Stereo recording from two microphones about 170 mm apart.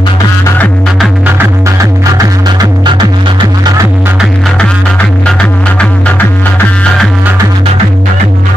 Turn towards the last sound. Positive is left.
turn(degrees=5)  # may be behind; listen again after turning